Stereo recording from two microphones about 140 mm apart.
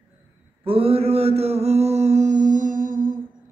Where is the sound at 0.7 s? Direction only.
45° right (ahead or behind); by 3.2 s 75° right (ahead or behind).